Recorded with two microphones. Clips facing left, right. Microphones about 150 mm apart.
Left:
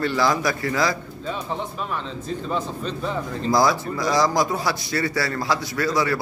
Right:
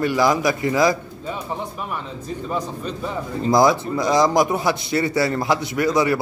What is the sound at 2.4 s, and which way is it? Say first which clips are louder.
A man's voice: right 1 dB; 10° right (ahead or behind).